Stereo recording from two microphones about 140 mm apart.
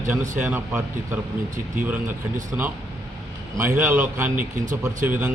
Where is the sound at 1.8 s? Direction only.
10° right (ahead or behind).